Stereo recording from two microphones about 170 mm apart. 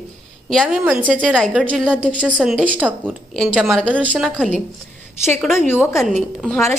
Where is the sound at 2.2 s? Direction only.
5° right (ahead or behind).